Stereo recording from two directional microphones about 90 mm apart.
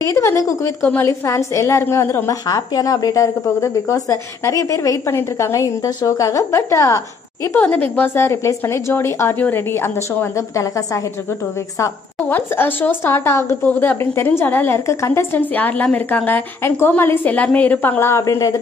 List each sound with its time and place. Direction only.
0.0 s a woman's voice: 30° left (ahead or behind)
2.4 s a woman's voice: 45° left (ahead or behind)
7.5 s a woman's voice: 20° left (ahead or behind); by 11.0 s 35° left (ahead or behind)
12.3 s a woman's voice: 20° left (ahead or behind)
15.3 s a woman's voice: 20° left (ahead or behind); by 18.6 s 35° left (ahead or behind)